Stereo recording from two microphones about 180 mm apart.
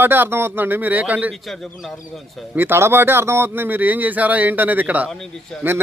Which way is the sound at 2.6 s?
15° right (ahead or behind).